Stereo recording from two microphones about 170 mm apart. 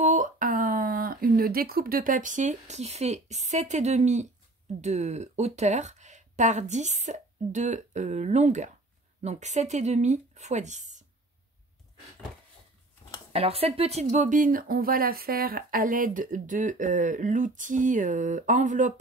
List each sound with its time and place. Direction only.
0.0 s speech: 50° right (ahead or behind)
13.3 s speech: 35° right (ahead or behind)